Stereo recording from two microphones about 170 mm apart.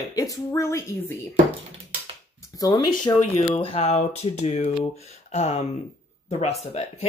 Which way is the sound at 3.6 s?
35° left (ahead or behind).